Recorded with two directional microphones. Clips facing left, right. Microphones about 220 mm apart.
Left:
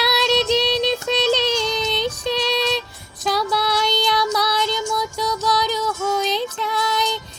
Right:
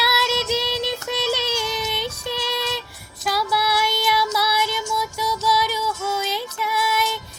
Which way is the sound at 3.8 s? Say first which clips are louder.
Left 2 dB; 20° left (ahead or behind).